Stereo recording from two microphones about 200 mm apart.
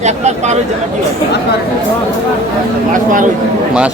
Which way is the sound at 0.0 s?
35° right (ahead or behind).